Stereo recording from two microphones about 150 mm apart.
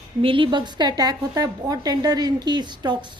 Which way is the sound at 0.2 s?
35° right (ahead or behind).